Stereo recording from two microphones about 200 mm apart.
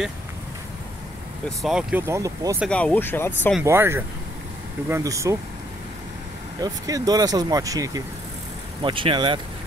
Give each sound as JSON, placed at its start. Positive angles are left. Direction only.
{"t": 1.6, "sound": "speech", "side_deg": -5}
{"t": 2.6, "sound": "speech", "side_deg": 5}
{"t": 3.6, "sound": "speech", "side_deg": -10}
{"t": 6.6, "sound": "speech", "side_deg": -20}